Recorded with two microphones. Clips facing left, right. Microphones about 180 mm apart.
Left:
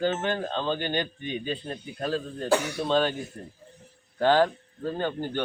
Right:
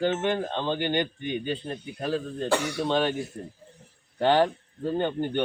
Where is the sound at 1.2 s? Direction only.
60° right (ahead or behind).